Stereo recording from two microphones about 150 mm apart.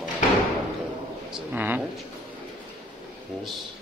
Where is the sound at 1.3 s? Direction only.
10° right (ahead or behind).